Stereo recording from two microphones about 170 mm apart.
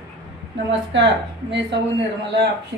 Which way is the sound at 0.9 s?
90° right.